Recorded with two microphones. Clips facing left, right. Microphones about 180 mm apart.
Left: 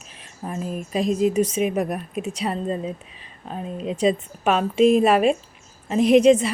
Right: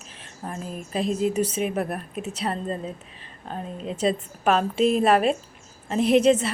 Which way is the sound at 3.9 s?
5° left (ahead or behind).